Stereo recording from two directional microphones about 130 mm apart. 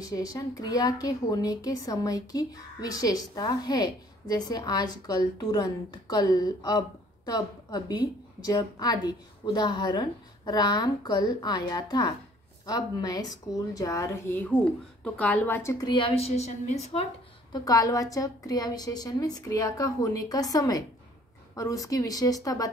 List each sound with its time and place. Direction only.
0.0 s a woman's voice: 30° left (ahead or behind)
15.9 s a woman's voice: 40° left (ahead or behind)
16.3 s a woman's voice: 55° left (ahead or behind)
17.5 s a woman's voice: 30° left (ahead or behind)